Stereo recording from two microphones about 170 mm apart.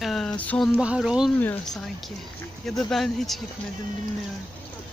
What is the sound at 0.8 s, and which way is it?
Speech, 5° right (ahead or behind).